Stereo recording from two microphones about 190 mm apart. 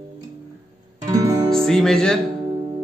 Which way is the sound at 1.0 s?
20° right (ahead or behind).